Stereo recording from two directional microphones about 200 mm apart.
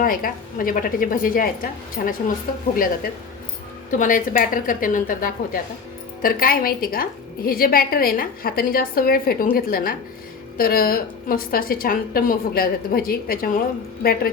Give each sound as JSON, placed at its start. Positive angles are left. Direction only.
{"t": 0.0, "sound": "a woman's voice", "side_deg": 45}